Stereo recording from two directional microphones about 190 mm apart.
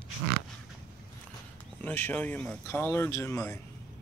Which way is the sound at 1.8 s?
10° left (ahead or behind).